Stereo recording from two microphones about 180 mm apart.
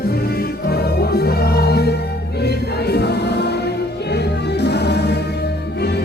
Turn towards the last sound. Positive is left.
turn(degrees=70)  # may be behind; listen again after turning